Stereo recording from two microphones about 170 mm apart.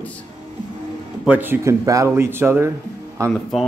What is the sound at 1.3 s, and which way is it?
Speech, 10° right (ahead or behind).